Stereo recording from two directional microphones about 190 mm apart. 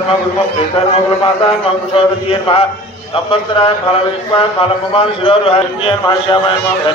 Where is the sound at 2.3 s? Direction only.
30° left (ahead or behind).